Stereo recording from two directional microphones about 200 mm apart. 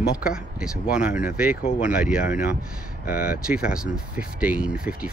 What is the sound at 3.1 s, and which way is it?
Speech, 50° left (ahead or behind).